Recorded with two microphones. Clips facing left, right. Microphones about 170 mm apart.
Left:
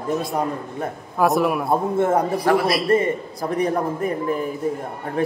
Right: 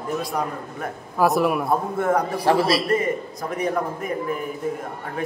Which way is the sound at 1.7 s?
25° left (ahead or behind).